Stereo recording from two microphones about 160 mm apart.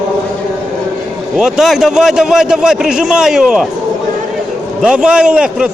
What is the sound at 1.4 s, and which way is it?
A man's voice, 5° right (ahead or behind).